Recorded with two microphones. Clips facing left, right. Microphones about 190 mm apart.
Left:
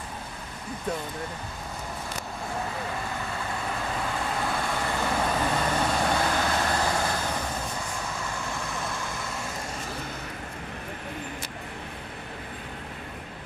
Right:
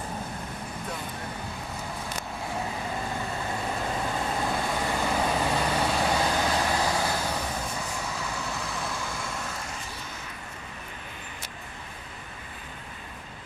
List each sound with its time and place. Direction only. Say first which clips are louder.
4.5 s vehicle: right 1 dB; 10° right (ahead or behind)